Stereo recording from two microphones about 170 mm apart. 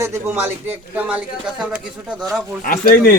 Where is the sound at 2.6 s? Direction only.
60° left (ahead or behind).